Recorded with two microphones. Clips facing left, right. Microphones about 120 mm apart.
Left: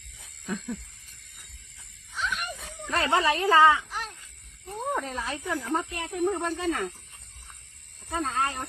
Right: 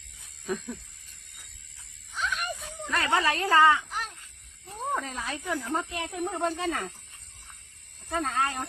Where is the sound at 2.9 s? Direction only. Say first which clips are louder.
Left 2 dB; 25° left (ahead or behind).